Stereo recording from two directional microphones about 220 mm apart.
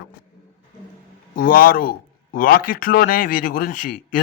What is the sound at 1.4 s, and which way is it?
Speech, 40° left (ahead or behind).